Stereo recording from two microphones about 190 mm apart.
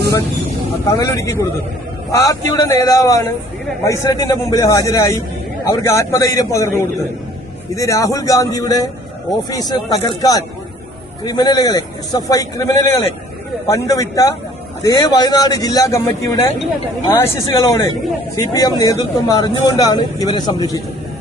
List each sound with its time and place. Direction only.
0.9 s a man's voice: 15° left (ahead or behind)